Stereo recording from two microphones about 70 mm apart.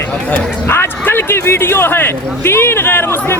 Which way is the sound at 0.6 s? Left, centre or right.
Left.